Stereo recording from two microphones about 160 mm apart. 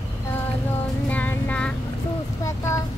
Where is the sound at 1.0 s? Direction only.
10° left (ahead or behind).